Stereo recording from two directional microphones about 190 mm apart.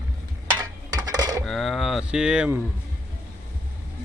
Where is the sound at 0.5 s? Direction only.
20° right (ahead or behind).